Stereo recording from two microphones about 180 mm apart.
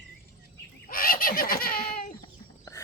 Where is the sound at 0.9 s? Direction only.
55° left (ahead or behind).